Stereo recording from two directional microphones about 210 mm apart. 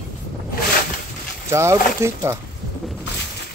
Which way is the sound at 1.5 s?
15° right (ahead or behind).